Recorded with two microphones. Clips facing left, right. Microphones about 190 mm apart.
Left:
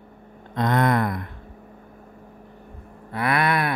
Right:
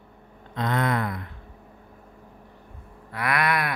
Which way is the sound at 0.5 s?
45° left (ahead or behind).